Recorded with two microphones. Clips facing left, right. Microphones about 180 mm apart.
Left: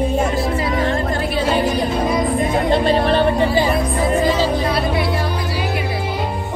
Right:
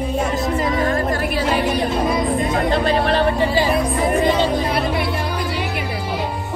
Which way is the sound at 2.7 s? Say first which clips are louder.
Left 4 dB; 25° left (ahead or behind).